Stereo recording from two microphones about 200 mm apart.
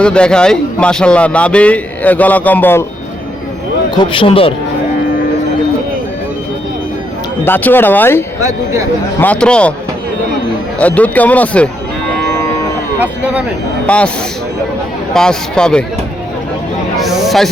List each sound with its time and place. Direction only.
0.0 s a man's voice: 5° left (ahead or behind)
3.9 s speech: 25° left (ahead or behind)
7.4 s speech: 10° left (ahead or behind)
8.4 s speech: 15° right (ahead or behind)
9.2 s a man's voice: 5° left (ahead or behind)
10.8 s speech: 5° left (ahead or behind)
12.3 s music: 15° left (ahead or behind)
13.0 s speech: 5° right (ahead or behind)
13.8 s speech: 5° left (ahead or behind)
15.1 s a man's voice: 5° left (ahead or behind)
17.0 s music: centre (ahead or behind)